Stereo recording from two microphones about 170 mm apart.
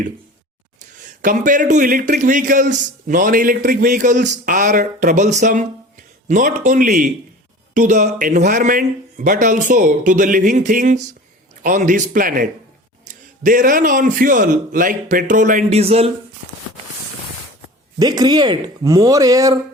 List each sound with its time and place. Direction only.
1.0 s a man's voice: 50° right (ahead or behind)
18.0 s speech: 25° right (ahead or behind)